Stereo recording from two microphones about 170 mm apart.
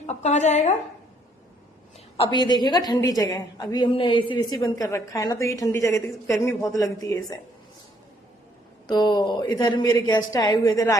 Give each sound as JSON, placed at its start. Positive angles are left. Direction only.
{"t": 0.0, "sound": "a woman's voice", "side_deg": 40}
{"t": 2.1, "sound": "a woman's voice", "side_deg": 30}
{"t": 8.9, "sound": "a woman's voice", "side_deg": 25}